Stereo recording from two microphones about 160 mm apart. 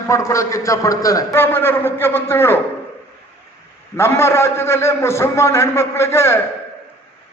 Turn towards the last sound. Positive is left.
turn(degrees=15)  # may be behind; listen again after turning